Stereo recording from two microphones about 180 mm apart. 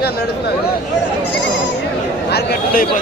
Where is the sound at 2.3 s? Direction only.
60° left (ahead or behind).